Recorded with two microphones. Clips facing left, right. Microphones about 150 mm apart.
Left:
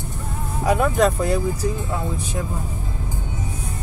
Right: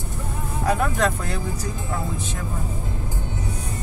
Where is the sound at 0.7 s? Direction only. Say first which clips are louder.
Left 4 dB; 10° left (ahead or behind).